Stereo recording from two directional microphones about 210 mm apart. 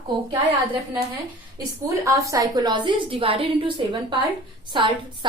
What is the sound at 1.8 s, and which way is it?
A woman's voice, 15° right (ahead or behind).